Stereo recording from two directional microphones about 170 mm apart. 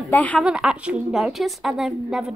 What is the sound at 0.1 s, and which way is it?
Speech, 10° left (ahead or behind).